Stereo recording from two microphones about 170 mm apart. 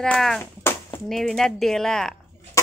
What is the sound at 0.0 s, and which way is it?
Speech, 5° left (ahead or behind).